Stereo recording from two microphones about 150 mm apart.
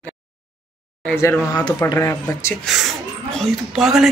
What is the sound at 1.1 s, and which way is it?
Speech, 20° left (ahead or behind).